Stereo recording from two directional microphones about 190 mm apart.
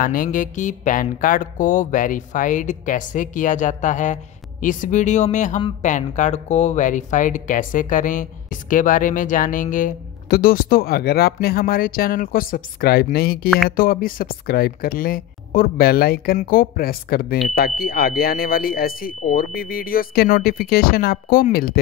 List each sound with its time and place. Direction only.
0.0 s speech: 45° left (ahead or behind)